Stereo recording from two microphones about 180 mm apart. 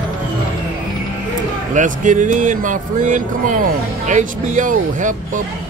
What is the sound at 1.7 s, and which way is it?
Speech, 45° right (ahead or behind).